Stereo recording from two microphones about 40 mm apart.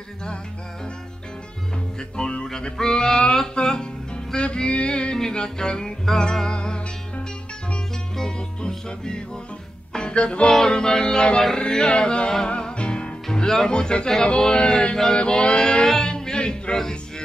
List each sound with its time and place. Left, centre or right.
2.0 s music: left
5.1 s music: centre
13.3 s music: centre